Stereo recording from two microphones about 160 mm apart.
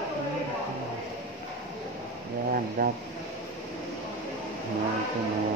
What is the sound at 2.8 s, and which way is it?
Speech, 65° right (ahead or behind).